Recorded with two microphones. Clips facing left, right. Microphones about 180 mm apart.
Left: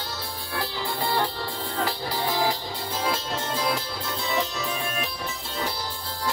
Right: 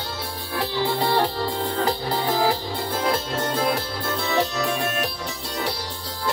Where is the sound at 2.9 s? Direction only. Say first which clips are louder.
Right 4 dB; 55° right (ahead or behind); by 5.1 s 75° right (ahead or behind).